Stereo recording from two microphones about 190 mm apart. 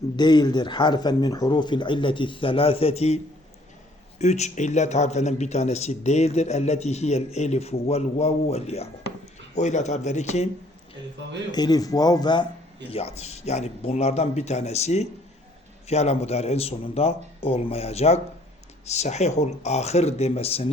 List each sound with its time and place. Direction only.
0.2 s speech: 25° left (ahead or behind)
4.2 s speech: 35° left (ahead or behind)
11.5 s speech: 20° left (ahead or behind)